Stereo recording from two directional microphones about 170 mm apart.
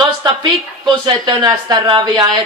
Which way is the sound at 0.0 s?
25° right (ahead or behind).